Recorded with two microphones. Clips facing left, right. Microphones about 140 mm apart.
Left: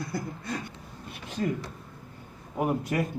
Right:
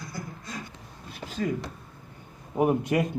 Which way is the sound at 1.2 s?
40° right (ahead or behind).